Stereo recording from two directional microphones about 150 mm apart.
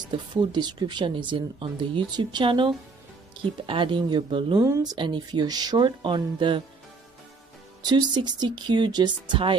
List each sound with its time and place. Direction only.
0.3 s speech: 30° right (ahead or behind)
4.6 s speech: 20° right (ahead or behind)
4.9 s speech: 30° right (ahead or behind)
7.8 s speech: 30° right (ahead or behind)